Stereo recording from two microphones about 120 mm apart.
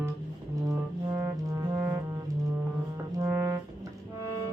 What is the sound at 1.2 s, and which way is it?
Music, 25° right (ahead or behind).